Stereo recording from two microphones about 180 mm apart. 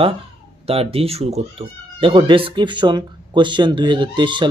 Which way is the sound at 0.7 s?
35° right (ahead or behind).